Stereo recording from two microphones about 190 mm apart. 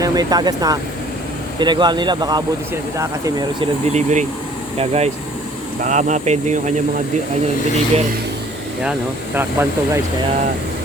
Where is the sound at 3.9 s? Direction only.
40° right (ahead or behind).